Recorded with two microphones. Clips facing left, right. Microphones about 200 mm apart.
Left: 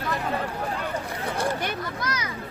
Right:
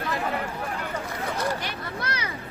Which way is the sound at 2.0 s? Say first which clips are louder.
Even; 30° right (ahead or behind).